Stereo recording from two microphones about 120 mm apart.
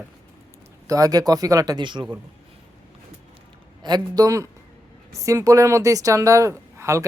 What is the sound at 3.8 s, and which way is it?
Speech, 35° right (ahead or behind).